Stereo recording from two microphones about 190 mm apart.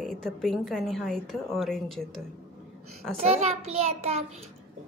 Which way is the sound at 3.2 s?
35° right (ahead or behind).